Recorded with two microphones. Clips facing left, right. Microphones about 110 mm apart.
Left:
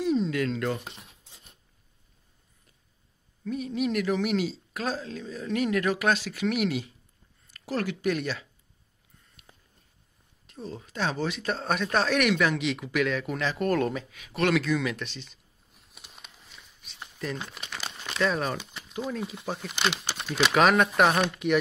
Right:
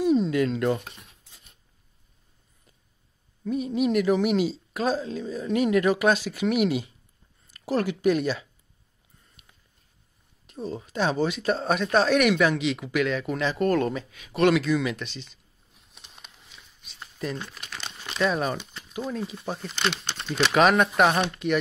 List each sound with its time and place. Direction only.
0.0 s speech: 10° right (ahead or behind)
3.4 s speech: 20° right (ahead or behind)
10.5 s speech: 15° right (ahead or behind)
15.7 s a sound: centre (ahead or behind)
17.5 s crumpling: 5° left (ahead or behind)
18.0 s speech: 10° right (ahead or behind)
18.6 s a sound: 10° left (ahead or behind)
18.9 s speech: centre (ahead or behind)
21.3 s speech: 10° left (ahead or behind)